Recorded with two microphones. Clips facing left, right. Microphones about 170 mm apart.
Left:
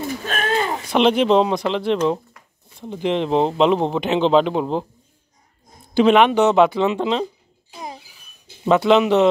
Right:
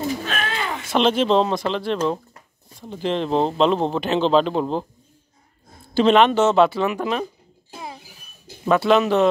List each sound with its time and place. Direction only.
0.2 s a sound: 45° left (ahead or behind)
0.9 s speech: 15° left (ahead or behind)
8.6 s speech: 20° left (ahead or behind)